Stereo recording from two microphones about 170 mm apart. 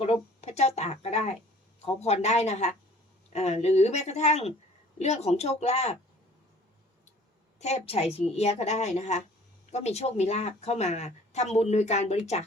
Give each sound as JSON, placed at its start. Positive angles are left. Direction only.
{"t": 0.0, "sound": "a sound", "side_deg": 40}
{"t": 1.8, "sound": "a woman's voice", "side_deg": 40}
{"t": 7.6, "sound": "a woman's voice", "side_deg": 35}